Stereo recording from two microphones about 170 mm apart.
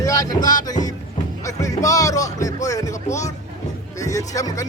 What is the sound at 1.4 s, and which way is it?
Music, 20° left (ahead or behind).